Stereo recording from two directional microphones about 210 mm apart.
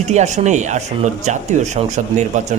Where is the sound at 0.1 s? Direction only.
35° right (ahead or behind).